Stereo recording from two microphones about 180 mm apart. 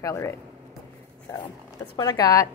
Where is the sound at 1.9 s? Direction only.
20° left (ahead or behind).